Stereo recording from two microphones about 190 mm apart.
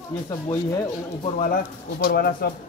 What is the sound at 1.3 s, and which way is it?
Speech, 40° left (ahead or behind).